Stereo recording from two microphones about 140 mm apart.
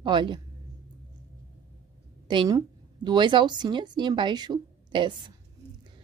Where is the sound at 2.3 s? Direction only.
35° right (ahead or behind).